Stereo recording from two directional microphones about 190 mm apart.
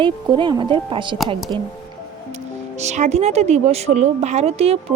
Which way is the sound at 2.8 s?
35° right (ahead or behind).